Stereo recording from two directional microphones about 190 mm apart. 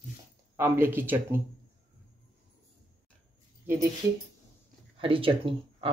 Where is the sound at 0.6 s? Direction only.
10° right (ahead or behind).